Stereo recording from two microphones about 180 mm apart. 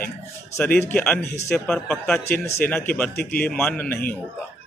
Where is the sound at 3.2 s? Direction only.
55° left (ahead or behind).